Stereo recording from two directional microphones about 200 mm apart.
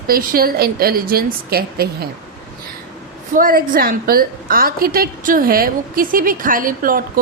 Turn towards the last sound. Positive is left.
turn(degrees=-45)  # may be behind; listen again after turning